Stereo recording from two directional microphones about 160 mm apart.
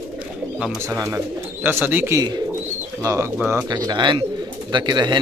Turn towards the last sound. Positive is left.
turn(degrees=-25)  # may be behind; listen again after turning